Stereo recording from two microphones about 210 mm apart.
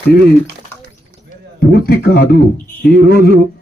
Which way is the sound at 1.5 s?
50° left (ahead or behind).